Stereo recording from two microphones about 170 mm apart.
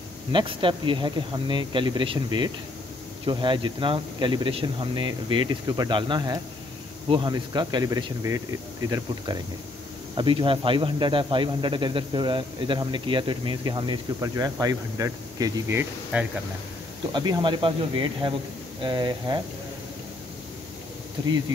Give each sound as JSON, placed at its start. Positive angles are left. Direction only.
{"t": 0.3, "sound": "speech", "side_deg": -30}
{"t": 16.1, "sound": "speech", "side_deg": -10}
{"t": 17.1, "sound": "speech", "side_deg": -25}